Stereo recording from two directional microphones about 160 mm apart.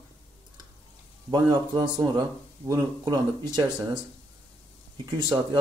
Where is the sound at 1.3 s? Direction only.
25° right (ahead or behind).